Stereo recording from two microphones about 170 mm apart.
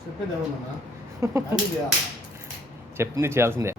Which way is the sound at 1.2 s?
15° right (ahead or behind).